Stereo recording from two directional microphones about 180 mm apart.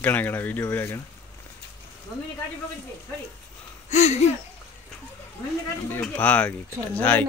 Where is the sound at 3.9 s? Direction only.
40° left (ahead or behind).